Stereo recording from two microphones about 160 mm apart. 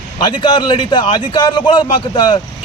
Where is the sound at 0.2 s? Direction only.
25° left (ahead or behind).